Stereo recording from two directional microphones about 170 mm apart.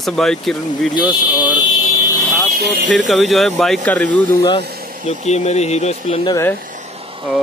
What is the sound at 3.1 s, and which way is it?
Speech, centre (ahead or behind).